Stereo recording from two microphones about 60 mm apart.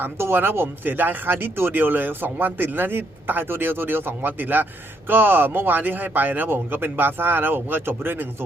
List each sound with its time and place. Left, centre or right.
0.0 s speech: right